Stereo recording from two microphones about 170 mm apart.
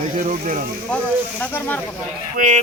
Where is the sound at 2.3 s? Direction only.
45° right (ahead or behind).